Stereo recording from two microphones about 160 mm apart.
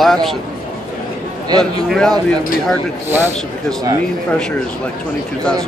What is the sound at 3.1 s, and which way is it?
Speech, 15° right (ahead or behind).